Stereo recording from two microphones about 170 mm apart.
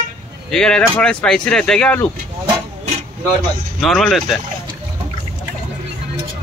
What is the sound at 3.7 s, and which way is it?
Speech, centre (ahead or behind).